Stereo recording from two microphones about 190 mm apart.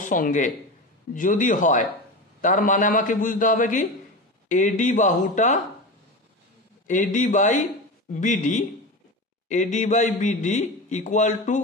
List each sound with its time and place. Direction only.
0.0 s a man's voice: 45° left (ahead or behind)
6.9 s a man's voice: 40° left (ahead or behind)